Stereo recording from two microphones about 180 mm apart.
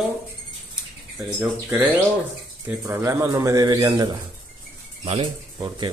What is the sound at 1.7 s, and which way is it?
A man's voice, 10° right (ahead or behind).